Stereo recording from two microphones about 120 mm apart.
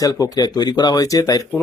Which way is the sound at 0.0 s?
30° left (ahead or behind).